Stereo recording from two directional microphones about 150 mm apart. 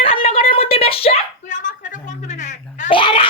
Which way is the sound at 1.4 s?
55° left (ahead or behind).